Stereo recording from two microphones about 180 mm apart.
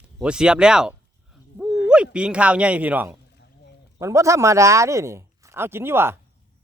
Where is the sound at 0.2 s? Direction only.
5° right (ahead or behind).